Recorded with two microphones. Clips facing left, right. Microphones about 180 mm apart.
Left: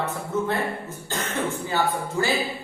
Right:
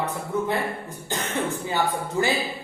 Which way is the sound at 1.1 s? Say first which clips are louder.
Right 1 dB; 15° right (ahead or behind).